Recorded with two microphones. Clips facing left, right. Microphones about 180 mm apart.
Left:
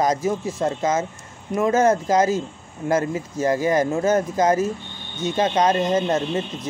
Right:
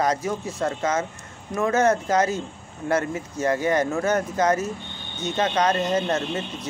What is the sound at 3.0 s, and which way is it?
Speech, 30° left (ahead or behind).